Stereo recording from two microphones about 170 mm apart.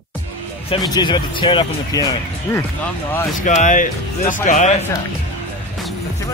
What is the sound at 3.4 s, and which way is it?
Speech, 50° left (ahead or behind).